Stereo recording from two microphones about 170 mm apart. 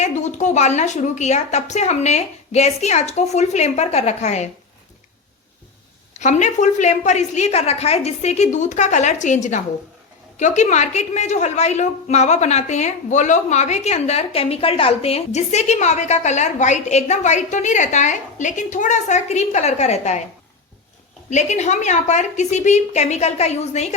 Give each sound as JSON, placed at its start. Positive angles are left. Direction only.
{"t": 0.0, "sound": "a woman's voice", "side_deg": 45}
{"t": 6.1, "sound": "a woman's voice", "side_deg": 45}
{"t": 21.2, "sound": "a woman's voice", "side_deg": 45}